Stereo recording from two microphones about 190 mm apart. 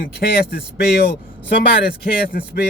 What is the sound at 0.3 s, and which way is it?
Speech, 55° left (ahead or behind).